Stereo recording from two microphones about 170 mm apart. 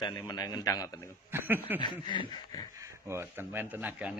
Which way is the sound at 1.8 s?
25° left (ahead or behind).